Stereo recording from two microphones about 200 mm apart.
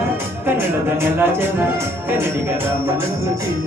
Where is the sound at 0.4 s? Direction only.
10° right (ahead or behind).